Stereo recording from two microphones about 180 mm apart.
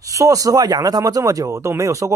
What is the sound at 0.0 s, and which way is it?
Speech, 20° right (ahead or behind).